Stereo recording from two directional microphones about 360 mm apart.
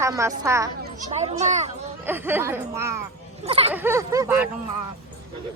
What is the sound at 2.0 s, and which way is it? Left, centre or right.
Speech, centre.